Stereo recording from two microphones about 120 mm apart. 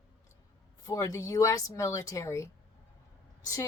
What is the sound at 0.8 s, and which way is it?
Speech, 30° left (ahead or behind).